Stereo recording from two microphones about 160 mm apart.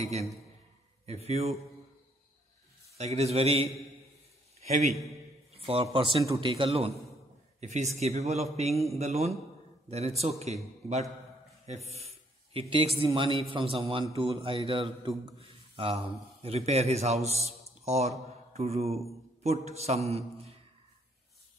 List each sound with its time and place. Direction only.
1.0 s a man's voice: 40° right (ahead or behind)
3.0 s a man's voice: 40° right (ahead or behind)
6.2 s speech: 20° right (ahead or behind)
6.5 s a man's voice: 35° right (ahead or behind)
7.6 s a man's voice: 45° right (ahead or behind)
18.2 s mantra: 40° right (ahead or behind)
19.4 s a man's voice: 40° right (ahead or behind)